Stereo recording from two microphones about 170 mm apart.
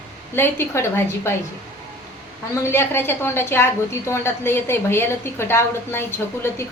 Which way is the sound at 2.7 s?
15° left (ahead or behind).